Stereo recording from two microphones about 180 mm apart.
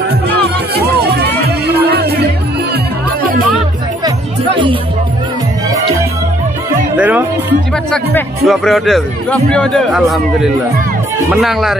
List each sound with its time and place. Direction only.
0.3 s music: 60° right (ahead or behind)
7.0 s speech: 10° right (ahead or behind)
7.9 s a man's voice: 5° left (ahead or behind)